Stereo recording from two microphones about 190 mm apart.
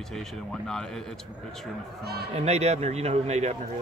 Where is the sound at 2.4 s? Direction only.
35° right (ahead or behind).